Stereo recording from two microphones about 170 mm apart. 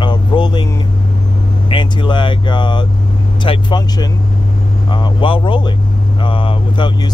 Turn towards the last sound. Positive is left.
turn(degrees=30)  # may be behind; listen again after turning